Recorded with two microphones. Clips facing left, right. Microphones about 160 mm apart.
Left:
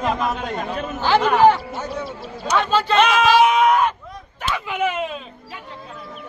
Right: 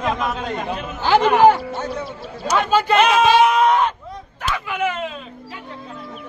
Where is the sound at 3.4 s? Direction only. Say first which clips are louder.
Even; 5° left (ahead or behind).